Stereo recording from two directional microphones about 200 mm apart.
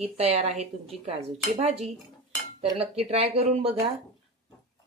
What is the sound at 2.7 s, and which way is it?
Speech, 30° right (ahead or behind).